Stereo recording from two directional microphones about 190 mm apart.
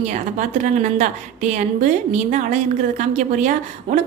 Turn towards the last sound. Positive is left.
turn(degrees=-40)  # may be behind; listen again after turning